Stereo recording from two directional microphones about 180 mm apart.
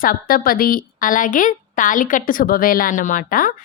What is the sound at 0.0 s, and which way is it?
A woman's voice, 50° left (ahead or behind).